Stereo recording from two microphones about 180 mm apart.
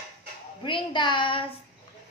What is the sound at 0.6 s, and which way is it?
Speech, 25° left (ahead or behind).